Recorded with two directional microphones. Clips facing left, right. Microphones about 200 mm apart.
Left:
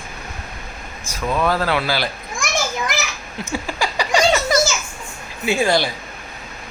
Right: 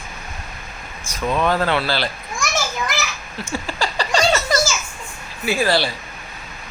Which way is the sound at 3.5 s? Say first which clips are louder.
Left 1 dB; 10° left (ahead or behind).